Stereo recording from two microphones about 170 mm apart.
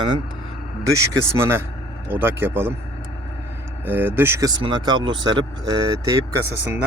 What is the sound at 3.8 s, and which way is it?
Speech, 10° right (ahead or behind).